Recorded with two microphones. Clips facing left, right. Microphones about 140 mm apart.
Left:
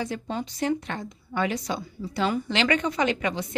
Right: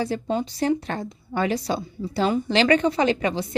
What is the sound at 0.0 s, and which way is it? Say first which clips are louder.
A woman's voice: right 5 dB; 35° right (ahead or behind).